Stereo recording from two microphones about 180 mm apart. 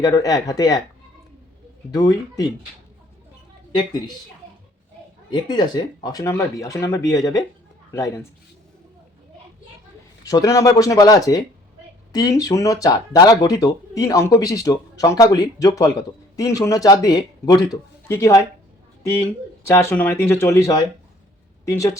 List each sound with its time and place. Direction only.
0.0 s speech: 20° left (ahead or behind)
1.9 s speech: 20° left (ahead or behind)
5.3 s speech: 25° left (ahead or behind)
10.2 s speech: 20° left (ahead or behind)
19.6 s speech: 15° left (ahead or behind)